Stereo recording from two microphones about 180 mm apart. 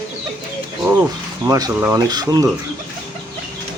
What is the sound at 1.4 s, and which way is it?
Speech, 15° right (ahead or behind).